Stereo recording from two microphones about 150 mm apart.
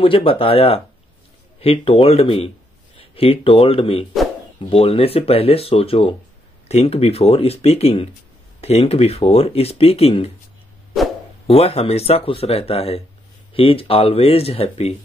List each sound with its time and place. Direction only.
0.0 s speech: 35° left (ahead or behind)
11.4 s speech: 40° left (ahead or behind)